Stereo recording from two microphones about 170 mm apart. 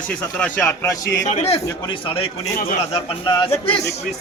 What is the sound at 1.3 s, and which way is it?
Speech, 40° left (ahead or behind).